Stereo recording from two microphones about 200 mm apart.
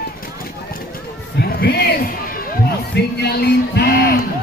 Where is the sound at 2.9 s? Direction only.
55° left (ahead or behind).